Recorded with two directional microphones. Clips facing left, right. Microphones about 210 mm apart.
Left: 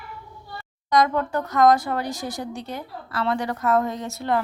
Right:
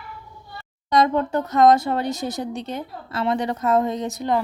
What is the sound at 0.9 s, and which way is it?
Speech, 25° right (ahead or behind).